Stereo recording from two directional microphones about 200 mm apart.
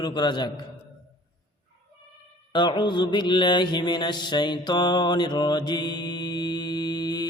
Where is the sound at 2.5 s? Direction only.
20° left (ahead or behind).